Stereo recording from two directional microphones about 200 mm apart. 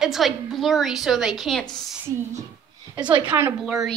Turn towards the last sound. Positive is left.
turn(degrees=-10)  # may be behind; listen again after turning